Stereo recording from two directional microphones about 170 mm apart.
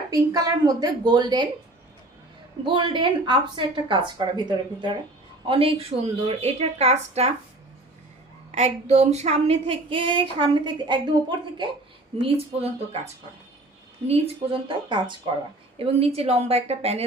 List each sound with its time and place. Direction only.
0.1 s a woman's voice: 20° right (ahead or behind)
2.6 s a woman's voice: 30° right (ahead or behind)
8.5 s speech: 40° right (ahead or behind)
14.1 s a woman's voice: 30° right (ahead or behind)